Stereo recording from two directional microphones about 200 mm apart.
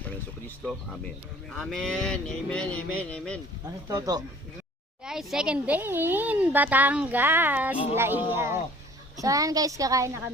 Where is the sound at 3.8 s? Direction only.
20° right (ahead or behind).